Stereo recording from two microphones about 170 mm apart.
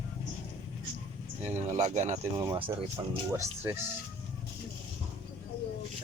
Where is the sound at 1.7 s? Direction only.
45° right (ahead or behind).